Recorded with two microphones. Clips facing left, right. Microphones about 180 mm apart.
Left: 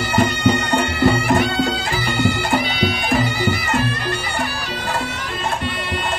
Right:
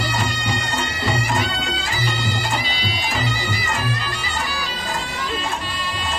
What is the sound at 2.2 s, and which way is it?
Bagpipes, 55° left (ahead or behind).